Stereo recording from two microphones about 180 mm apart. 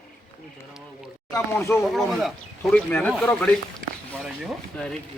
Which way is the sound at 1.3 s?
15° left (ahead or behind).